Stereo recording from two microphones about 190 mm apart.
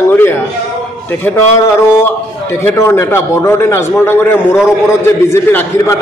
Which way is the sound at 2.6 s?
15° left (ahead or behind).